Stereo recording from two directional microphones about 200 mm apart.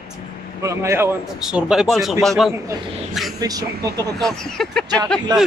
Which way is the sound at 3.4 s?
20° right (ahead or behind).